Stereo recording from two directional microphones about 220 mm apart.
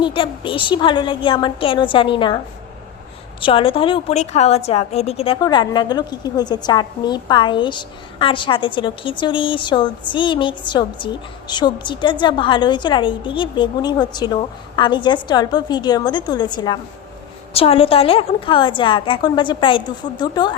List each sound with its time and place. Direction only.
0.0 s a woman's voice: 25° left (ahead or behind)
3.4 s a woman's voice: 25° left (ahead or behind)